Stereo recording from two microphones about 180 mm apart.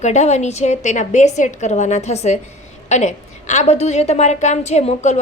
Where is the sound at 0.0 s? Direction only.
40° left (ahead or behind).